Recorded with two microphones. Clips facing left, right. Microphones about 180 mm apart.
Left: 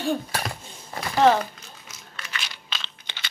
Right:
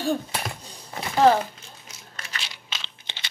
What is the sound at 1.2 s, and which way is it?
Crumpling, 35° right (ahead or behind).